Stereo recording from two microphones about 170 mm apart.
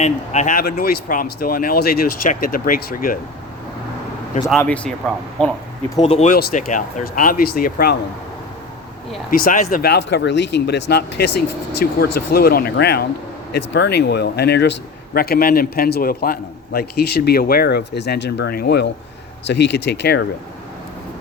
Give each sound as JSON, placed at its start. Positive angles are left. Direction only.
{"t": 0.0, "sound": "speech", "side_deg": 45}
{"t": 0.6, "sound": "speech", "side_deg": 60}
{"t": 4.4, "sound": "speech", "side_deg": 5}
{"t": 6.0, "sound": "speech", "side_deg": 40}
{"t": 6.3, "sound": "speech", "side_deg": 55}
{"t": 9.3, "sound": "speech", "side_deg": 55}
{"t": 9.9, "sound": "a man's voice", "side_deg": 90}
{"t": 19.5, "sound": "speech", "side_deg": 85}